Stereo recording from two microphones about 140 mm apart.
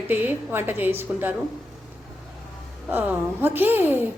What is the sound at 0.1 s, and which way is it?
Speech, 15° right (ahead or behind).